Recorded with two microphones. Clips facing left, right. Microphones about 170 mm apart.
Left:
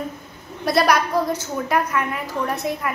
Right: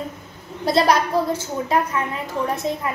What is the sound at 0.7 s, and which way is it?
A woman's voice, 25° right (ahead or behind).